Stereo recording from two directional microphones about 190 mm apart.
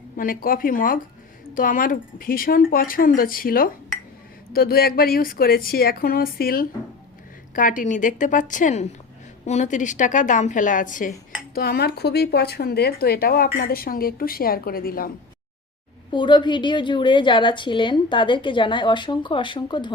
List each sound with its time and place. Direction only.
0.2 s a woman's voice: 50° left (ahead or behind)
11.5 s speech: 55° left (ahead or behind)
16.1 s a woman's voice: 25° left (ahead or behind)